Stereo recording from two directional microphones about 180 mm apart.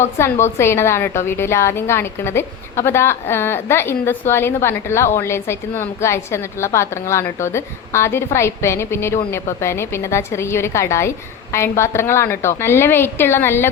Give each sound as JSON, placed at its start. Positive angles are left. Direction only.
{"t": 0.0, "sound": "a woman's voice", "side_deg": 15}